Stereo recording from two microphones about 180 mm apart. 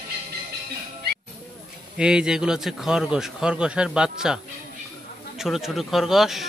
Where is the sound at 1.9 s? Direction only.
5° right (ahead or behind).